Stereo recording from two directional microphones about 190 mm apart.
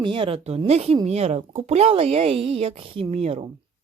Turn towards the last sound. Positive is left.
turn(degrees=-30)  # may be behind; listen again after turning